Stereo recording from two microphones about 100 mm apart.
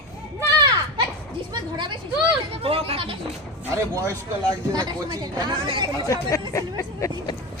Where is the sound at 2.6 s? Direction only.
70° right (ahead or behind).